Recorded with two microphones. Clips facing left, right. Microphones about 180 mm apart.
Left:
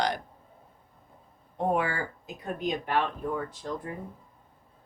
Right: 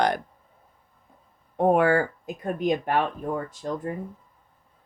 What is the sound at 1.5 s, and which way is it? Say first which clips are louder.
Speech: right 8 dB; 60° right (ahead or behind).